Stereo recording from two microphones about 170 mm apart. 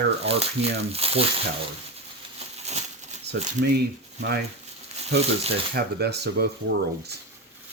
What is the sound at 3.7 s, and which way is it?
Speech, 70° right (ahead or behind).